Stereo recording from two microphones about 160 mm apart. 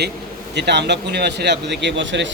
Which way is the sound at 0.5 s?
90° right.